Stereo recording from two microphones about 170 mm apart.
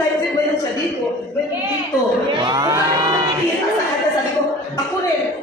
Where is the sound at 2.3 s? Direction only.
25° right (ahead or behind).